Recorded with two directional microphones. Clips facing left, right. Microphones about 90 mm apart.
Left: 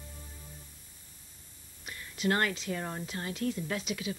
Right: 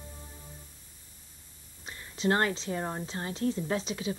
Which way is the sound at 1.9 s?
30° right (ahead or behind).